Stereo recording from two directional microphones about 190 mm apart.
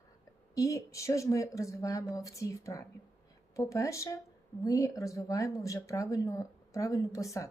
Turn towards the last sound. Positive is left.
turn(degrees=15)  # may be behind; listen again after turning